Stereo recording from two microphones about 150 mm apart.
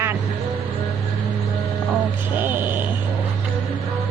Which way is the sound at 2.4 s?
10° right (ahead or behind).